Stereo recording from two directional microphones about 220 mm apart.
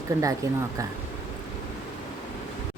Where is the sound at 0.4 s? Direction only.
15° right (ahead or behind).